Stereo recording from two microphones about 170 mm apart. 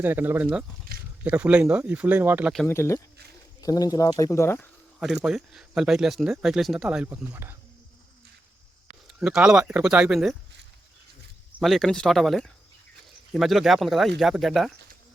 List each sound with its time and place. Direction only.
0.0 s speech: 10° right (ahead or behind)
2.6 s speech: 15° left (ahead or behind)
4.9 s speech: centre (ahead or behind)
9.0 s speech: 5° right (ahead or behind)
11.6 s speech: centre (ahead or behind)